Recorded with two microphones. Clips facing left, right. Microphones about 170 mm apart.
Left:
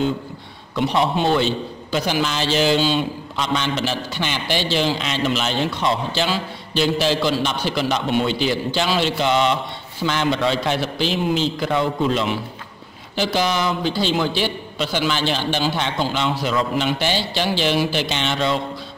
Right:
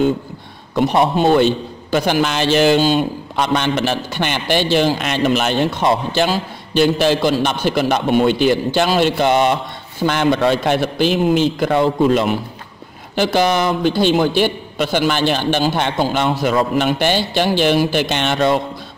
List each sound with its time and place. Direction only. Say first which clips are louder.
0.7 s a man's voice: right 5 dB; 50° right (ahead or behind)